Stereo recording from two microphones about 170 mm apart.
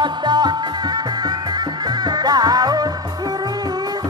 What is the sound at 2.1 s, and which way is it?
Music, 25° right (ahead or behind).